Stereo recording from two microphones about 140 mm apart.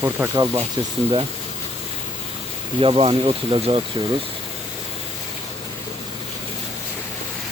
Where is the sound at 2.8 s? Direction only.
40° right (ahead or behind).